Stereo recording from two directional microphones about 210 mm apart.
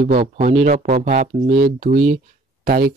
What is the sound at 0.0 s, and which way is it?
Speech, 40° right (ahead or behind).